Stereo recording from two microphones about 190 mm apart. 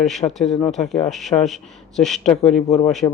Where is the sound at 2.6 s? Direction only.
35° left (ahead or behind).